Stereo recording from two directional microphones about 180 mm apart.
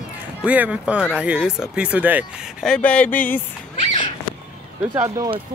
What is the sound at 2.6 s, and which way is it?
Speech, 5° left (ahead or behind).